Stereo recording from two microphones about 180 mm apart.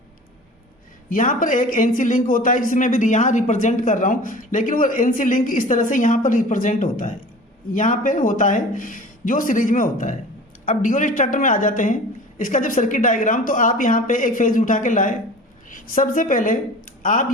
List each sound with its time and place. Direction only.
1.1 s a woman's voice: 50° left (ahead or behind)